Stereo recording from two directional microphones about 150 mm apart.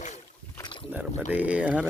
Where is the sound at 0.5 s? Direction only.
30° left (ahead or behind).